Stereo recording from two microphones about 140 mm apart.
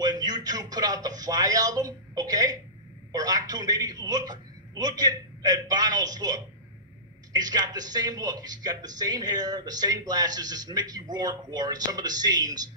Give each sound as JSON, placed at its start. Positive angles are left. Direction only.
{"t": 0.0, "sound": "a man's voice", "side_deg": -30}